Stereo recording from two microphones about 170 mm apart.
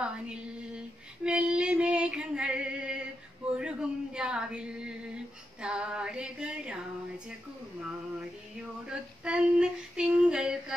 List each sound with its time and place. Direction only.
0.0 s female singing: 5° right (ahead or behind)
3.5 s speech: 5° right (ahead or behind)
8.8 s speech: 5° right (ahead or behind)